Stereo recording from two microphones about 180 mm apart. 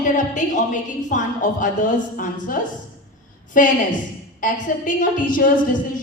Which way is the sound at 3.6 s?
50° left (ahead or behind).